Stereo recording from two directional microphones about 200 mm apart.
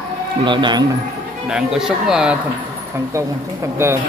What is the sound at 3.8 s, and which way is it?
Speech, 15° right (ahead or behind).